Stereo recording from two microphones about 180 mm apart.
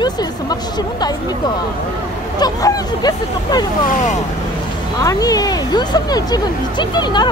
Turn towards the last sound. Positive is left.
turn(degrees=25)  # may be behind; listen again after turning